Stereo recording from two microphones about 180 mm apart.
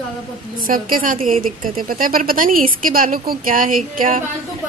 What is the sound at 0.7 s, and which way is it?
A woman's voice, 50° right (ahead or behind).